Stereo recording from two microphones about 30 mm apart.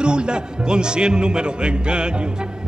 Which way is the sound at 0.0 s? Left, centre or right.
Right.